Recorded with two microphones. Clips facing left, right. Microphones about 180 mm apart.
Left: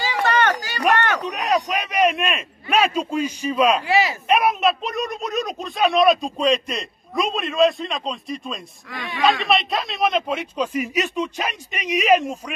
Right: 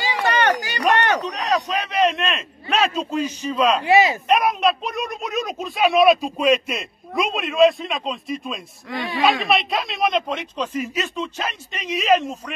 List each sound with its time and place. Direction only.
0.0 s a sound: 15° right (ahead or behind)
1.2 s a man's voice: 15° left (ahead or behind)
3.8 s speech: 20° right (ahead or behind)
4.3 s speech: 5° left (ahead or behind)
8.9 s speech: 25° right (ahead or behind)
9.2 s a man's voice: centre (ahead or behind)